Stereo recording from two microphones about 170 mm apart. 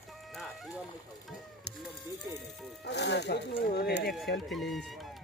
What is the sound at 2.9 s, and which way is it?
Speech, 90° left.